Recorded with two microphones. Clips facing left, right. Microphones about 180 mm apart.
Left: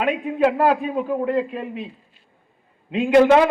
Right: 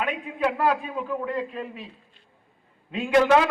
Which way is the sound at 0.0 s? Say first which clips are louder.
Left 7 dB; 35° left (ahead or behind).